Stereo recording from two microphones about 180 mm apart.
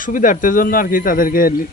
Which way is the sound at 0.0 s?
50° left (ahead or behind).